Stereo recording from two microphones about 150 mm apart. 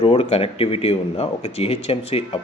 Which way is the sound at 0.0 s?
35° left (ahead or behind).